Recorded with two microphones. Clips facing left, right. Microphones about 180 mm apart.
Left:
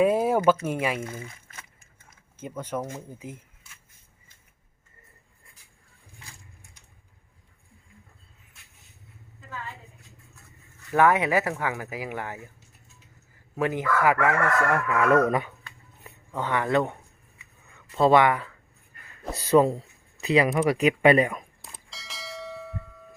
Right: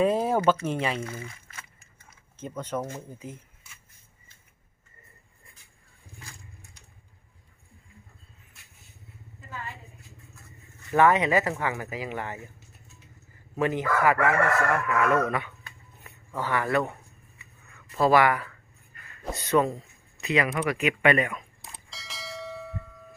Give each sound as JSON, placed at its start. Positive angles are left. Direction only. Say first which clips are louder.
{"t": 0.0, "sound": "speech", "louder": "left 2 dB", "side_deg": 10}
{"t": 2.4, "sound": "speech", "louder": "even", "side_deg": 10}
{"t": 10.9, "sound": "speech", "louder": "even", "side_deg": 10}
{"t": 13.6, "sound": "speech", "louder": "even", "side_deg": 15}
{"t": 14.8, "sound": "speech", "louder": "left 3 dB", "side_deg": 35}
{"t": 16.3, "sound": "speech", "louder": "left 2 dB", "side_deg": 20}
{"t": 17.9, "sound": "speech", "louder": "left 2 dB", "side_deg": 25}
{"t": 21.6, "sound": "bell", "louder": "even", "side_deg": 0}